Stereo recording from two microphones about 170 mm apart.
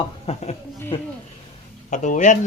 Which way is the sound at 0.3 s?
35° left (ahead or behind).